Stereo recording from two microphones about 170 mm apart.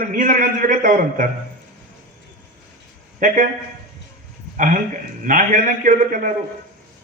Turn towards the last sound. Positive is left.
turn(degrees=-50)  # may be behind; listen again after turning